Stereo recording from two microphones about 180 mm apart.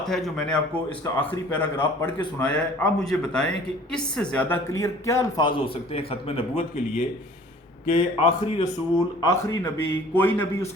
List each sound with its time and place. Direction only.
0.0 s a man's voice: centre (ahead or behind); by 7.0 s 40° left (ahead or behind)
7.9 s a man's voice: 30° left (ahead or behind)
9.2 s speech: 15° left (ahead or behind)